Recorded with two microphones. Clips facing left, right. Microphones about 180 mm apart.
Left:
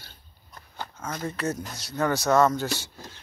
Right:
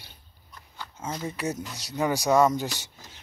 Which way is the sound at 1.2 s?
15° right (ahead or behind).